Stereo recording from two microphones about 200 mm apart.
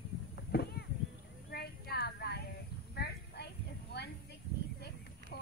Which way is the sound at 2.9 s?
55° left (ahead or behind).